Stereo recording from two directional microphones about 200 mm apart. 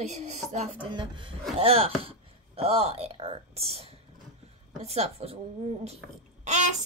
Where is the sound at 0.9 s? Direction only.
25° right (ahead or behind).